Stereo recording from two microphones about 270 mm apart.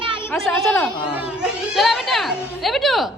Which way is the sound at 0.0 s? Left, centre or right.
Centre.